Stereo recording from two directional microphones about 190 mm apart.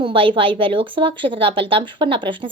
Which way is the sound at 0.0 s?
25° right (ahead or behind).